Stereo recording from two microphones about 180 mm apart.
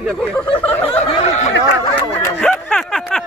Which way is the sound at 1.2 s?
40° left (ahead or behind).